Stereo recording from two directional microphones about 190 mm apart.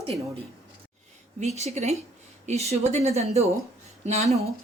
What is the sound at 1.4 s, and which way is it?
Speech, 35° right (ahead or behind).